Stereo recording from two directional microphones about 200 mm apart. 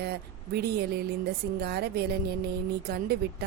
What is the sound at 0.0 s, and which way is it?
A woman's voice, 50° right (ahead or behind).